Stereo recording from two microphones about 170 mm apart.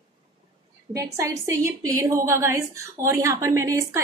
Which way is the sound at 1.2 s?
15° right (ahead or behind).